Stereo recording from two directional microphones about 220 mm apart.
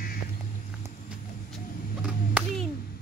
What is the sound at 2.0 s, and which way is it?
Clapping, 5° right (ahead or behind).